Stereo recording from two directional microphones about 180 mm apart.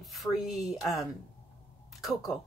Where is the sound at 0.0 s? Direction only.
Centre (ahead or behind).